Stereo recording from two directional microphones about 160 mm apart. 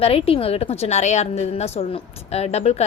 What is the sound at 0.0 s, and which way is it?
A woman's voice, 35° left (ahead or behind).